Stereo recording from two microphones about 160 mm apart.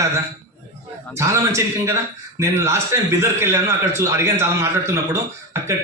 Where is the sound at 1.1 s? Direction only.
15° right (ahead or behind).